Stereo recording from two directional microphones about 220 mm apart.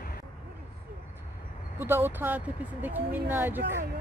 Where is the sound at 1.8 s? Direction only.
10° right (ahead or behind).